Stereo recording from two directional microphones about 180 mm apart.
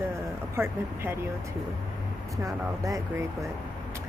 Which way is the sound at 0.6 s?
15° right (ahead or behind).